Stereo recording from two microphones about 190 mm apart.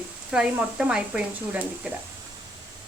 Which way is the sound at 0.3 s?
5° right (ahead or behind).